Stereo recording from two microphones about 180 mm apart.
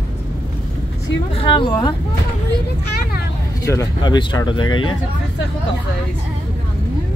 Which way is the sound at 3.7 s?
20° left (ahead or behind).